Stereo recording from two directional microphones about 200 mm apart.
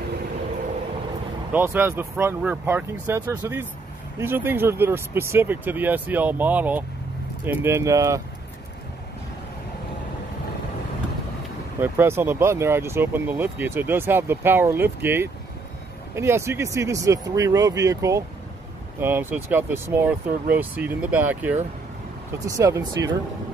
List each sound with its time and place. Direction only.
1.5 s speech: 10° right (ahead or behind)
11.8 s speech: 10° right (ahead or behind)
22.6 s speech: 15° right (ahead or behind)